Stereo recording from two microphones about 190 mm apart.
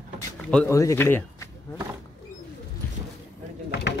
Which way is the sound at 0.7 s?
15° left (ahead or behind).